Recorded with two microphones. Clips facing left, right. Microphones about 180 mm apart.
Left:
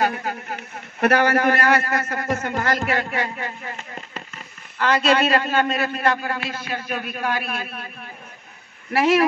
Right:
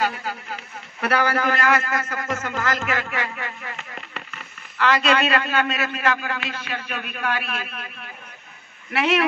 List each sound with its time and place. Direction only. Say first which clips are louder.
0.0 s a man's voice: left 3 dB; 50° left (ahead or behind); by 4.0 s 25° left (ahead or behind)
5.0 s a man's voice: left 2 dB; 35° left (ahead or behind)